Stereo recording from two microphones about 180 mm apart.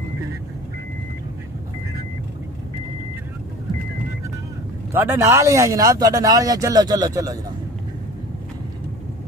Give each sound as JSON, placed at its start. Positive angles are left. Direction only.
{"t": 4.9, "sound": "speech", "side_deg": -10}